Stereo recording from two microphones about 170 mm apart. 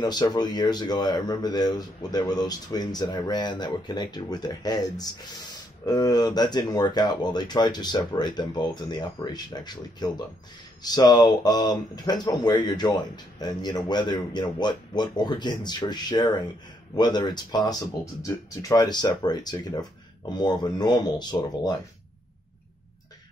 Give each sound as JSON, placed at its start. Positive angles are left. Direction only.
{"t": 0.0, "sound": "speech", "side_deg": 25}